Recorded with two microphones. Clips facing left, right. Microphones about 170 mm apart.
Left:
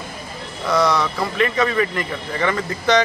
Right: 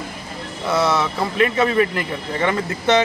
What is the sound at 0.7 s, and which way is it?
Speech, 5° right (ahead or behind).